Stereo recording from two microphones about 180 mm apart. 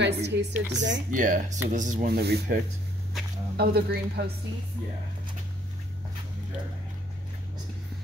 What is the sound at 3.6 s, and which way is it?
Speech, 60° right (ahead or behind).